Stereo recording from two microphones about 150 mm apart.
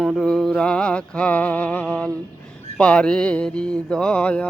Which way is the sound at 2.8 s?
5° left (ahead or behind).